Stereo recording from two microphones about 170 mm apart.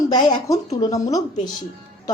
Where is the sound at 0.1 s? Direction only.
25° left (ahead or behind).